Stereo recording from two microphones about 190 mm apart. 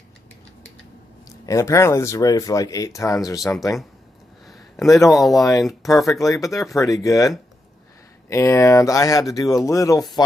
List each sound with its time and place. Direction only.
1.5 s speech: 15° left (ahead or behind)
4.4 s a sound: centre (ahead or behind)
4.9 s speech: 15° left (ahead or behind)
5.1 s speech: centre (ahead or behind)
5.4 s speech: 15° left (ahead or behind)
8.3 s speech: 15° left (ahead or behind)